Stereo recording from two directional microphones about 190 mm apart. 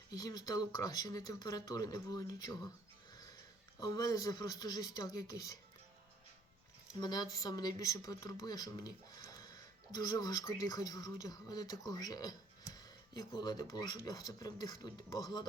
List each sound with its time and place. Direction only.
0.2 s speech: 20° left (ahead or behind)
3.8 s speech: 20° left (ahead or behind)
7.0 s speech: 20° left (ahead or behind)